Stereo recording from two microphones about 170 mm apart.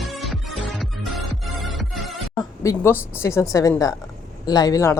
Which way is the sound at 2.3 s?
20° left (ahead or behind).